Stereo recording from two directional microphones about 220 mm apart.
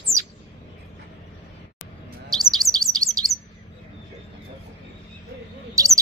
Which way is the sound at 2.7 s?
15° right (ahead or behind).